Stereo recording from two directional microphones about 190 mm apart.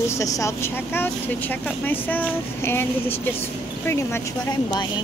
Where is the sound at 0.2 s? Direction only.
15° left (ahead or behind).